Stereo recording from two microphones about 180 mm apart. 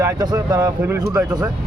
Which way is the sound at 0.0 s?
20° right (ahead or behind).